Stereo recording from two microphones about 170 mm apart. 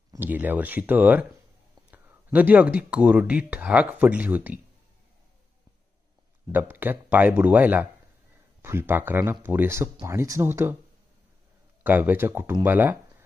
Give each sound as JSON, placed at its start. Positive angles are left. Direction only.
{"t": 0.1, "sound": "speech", "side_deg": -10}
{"t": 6.5, "sound": "speech", "side_deg": -10}
{"t": 11.8, "sound": "speech", "side_deg": -10}